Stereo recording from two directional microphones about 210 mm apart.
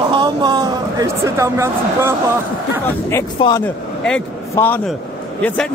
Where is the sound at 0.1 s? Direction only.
20° right (ahead or behind).